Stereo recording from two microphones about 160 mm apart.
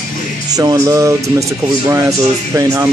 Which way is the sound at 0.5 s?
25° right (ahead or behind).